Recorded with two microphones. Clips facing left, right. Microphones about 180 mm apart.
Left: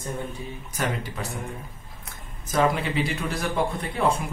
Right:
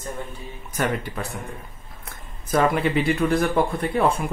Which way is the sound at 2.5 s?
60° right (ahead or behind).